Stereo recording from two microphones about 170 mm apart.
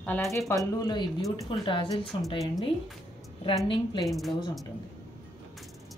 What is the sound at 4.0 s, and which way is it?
Speech, centre (ahead or behind).